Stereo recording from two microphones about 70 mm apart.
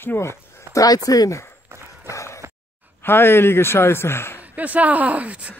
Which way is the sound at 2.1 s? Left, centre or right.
Left.